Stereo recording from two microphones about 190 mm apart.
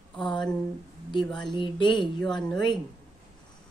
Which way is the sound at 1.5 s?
25° left (ahead or behind).